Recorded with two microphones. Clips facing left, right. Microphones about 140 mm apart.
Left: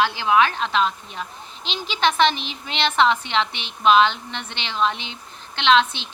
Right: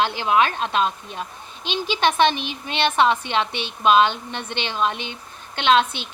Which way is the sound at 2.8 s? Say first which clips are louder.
Even; 15° right (ahead or behind).